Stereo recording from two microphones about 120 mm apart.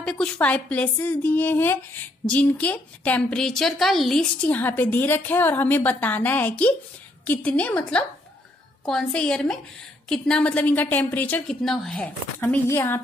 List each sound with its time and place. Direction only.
0.0 s a woman's voice: 10° left (ahead or behind)
11.6 s a woman's voice: 5° left (ahead or behind)
12.4 s a woman's voice: 20° left (ahead or behind)